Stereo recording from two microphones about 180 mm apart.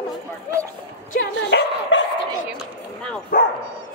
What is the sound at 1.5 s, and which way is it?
Dog, 85° left.